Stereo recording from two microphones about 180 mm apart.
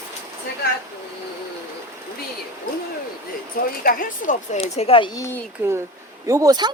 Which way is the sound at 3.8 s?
50° left (ahead or behind).